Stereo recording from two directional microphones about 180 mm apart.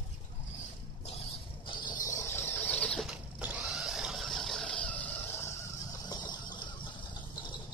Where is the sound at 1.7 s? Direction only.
25° left (ahead or behind).